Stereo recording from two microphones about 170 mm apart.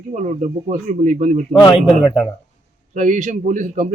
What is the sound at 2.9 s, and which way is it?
A man's voice, 45° right (ahead or behind).